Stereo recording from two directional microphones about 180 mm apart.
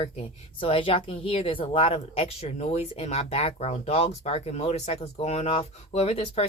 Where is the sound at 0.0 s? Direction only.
30° left (ahead or behind).